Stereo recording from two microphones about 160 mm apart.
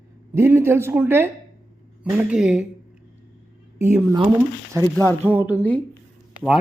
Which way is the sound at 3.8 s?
15° right (ahead or behind).